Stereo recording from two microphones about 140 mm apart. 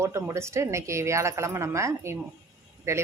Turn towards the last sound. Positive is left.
turn(degrees=-20)  # may be behind; listen again after turning